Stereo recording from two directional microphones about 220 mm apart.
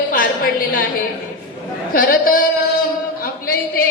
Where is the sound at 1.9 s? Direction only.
40° left (ahead or behind).